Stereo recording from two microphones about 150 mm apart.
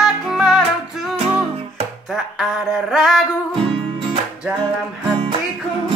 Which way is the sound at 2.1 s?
Centre (ahead or behind).